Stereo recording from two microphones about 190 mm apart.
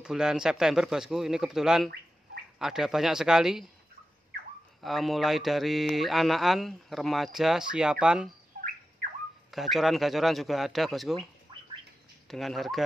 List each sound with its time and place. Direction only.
0.0 s speech: 5° right (ahead or behind)
4.8 s speech: centre (ahead or behind)
8.5 s bird: 50° right (ahead or behind)
9.5 s speech: centre (ahead or behind)
12.3 s speech: centre (ahead or behind)